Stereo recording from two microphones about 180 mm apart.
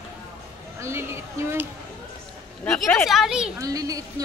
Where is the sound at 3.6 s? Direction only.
20° right (ahead or behind).